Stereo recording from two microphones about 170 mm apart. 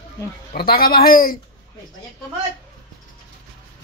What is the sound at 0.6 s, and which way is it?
Speech, 60° left (ahead or behind).